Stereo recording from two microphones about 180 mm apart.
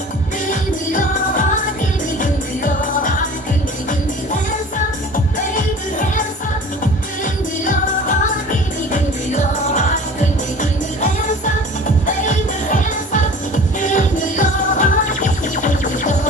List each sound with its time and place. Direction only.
0.5 s music: 45° left (ahead or behind)
5.5 s music: 45° left (ahead or behind)
7.6 s music: 45° left (ahead or behind)